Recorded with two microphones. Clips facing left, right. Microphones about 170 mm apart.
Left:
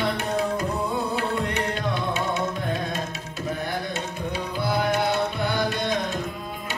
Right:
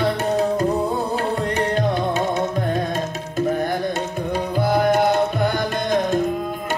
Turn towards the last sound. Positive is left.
turn(degrees=-50)  # may be behind; listen again after turning